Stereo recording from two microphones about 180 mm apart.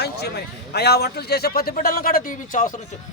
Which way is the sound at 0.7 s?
65° left (ahead or behind).